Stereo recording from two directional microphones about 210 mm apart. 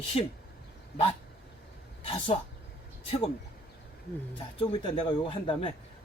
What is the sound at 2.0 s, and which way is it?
Speech, 25° left (ahead or behind).